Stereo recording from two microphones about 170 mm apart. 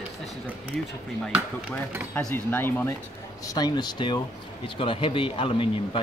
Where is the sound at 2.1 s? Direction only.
10° left (ahead or behind); by 6.0 s 30° left (ahead or behind).